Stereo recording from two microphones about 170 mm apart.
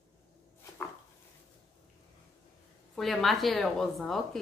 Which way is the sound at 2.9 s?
Centre (ahead or behind).